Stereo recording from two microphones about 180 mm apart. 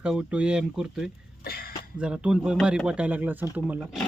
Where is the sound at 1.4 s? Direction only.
60° left (ahead or behind).